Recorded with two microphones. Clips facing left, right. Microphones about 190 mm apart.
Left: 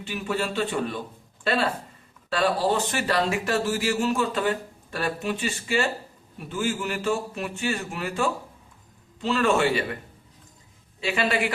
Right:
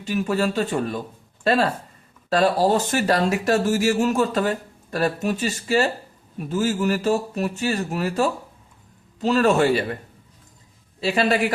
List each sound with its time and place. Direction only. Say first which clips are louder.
0.0 s speech: right 6 dB; 40° right (ahead or behind)
2.3 s speech: right 5 dB; 40° right (ahead or behind)
11.0 s speech: right 5 dB; 40° right (ahead or behind)